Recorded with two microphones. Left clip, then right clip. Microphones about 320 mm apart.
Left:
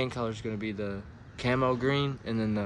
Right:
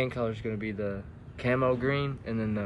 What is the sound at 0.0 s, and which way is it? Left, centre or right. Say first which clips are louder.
Speech: right 2 dB; centre.